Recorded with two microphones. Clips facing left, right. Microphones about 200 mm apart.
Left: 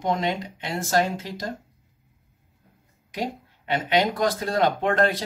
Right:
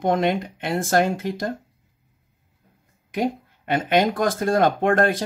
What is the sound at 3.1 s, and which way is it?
Speech, 50° right (ahead or behind).